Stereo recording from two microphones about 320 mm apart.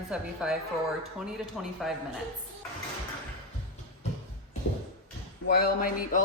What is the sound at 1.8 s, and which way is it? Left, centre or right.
Speech, centre.